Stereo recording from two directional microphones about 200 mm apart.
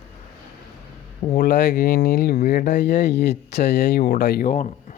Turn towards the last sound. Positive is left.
turn(degrees=40)  # may be behind; listen again after turning